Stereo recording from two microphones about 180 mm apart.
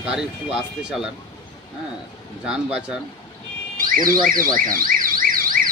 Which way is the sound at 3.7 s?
50° right (ahead or behind).